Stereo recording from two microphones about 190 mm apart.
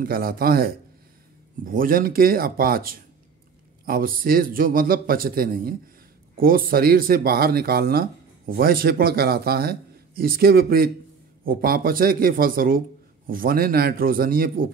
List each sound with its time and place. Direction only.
0.0 s speech: 50° right (ahead or behind)